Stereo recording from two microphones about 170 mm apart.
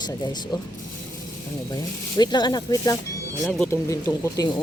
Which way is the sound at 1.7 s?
25° left (ahead or behind).